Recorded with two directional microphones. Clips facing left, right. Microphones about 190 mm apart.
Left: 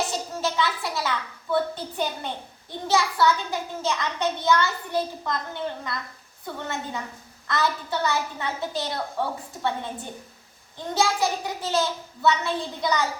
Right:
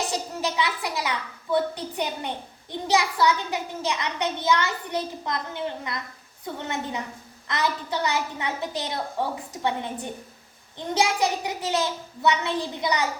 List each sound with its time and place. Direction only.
0.4 s a child's voice: 15° right (ahead or behind)